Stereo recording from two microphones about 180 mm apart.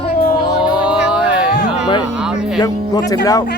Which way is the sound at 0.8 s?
5° right (ahead or behind).